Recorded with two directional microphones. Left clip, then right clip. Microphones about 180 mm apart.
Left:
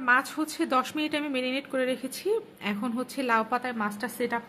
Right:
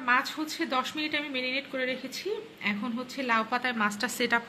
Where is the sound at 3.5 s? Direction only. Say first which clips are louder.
Right 1 dB; 20° left (ahead or behind).